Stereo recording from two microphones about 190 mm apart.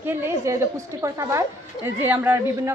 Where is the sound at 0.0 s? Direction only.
10° right (ahead or behind).